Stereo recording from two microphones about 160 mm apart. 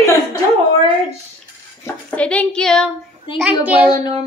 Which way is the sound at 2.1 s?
10° left (ahead or behind).